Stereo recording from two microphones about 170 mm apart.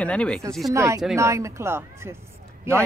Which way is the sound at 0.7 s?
20° right (ahead or behind).